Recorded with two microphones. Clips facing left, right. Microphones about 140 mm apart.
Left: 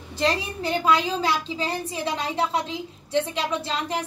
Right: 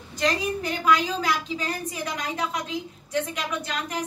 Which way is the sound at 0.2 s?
30° left (ahead or behind).